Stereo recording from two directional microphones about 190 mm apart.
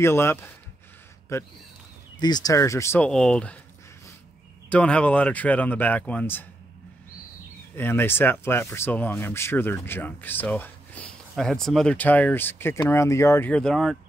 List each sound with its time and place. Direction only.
0.0 s speech: 15° left (ahead or behind)
4.6 s speech: 5° left (ahead or behind)
7.7 s speech: 10° left (ahead or behind)